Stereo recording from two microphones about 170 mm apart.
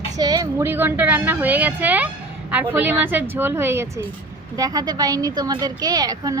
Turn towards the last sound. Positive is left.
turn(degrees=-20)  # may be behind; listen again after turning